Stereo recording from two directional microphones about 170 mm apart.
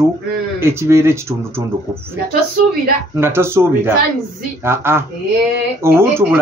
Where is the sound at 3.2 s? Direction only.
15° right (ahead or behind).